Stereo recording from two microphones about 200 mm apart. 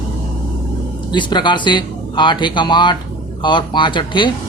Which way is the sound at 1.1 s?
20° left (ahead or behind).